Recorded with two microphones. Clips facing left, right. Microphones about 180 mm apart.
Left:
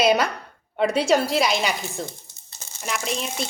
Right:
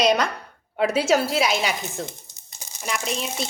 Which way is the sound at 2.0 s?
15° right (ahead or behind).